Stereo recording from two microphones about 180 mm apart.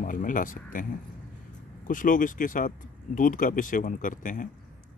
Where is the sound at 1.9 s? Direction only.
50° left (ahead or behind).